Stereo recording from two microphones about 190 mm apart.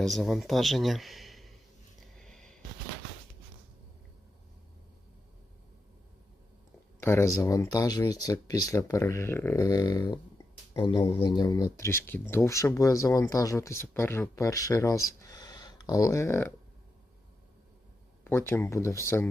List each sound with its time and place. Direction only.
0.0 s speech: centre (ahead or behind)
2.1 s a sound: 5° left (ahead or behind)
7.0 s speech: 15° left (ahead or behind)
18.3 s speech: 15° left (ahead or behind)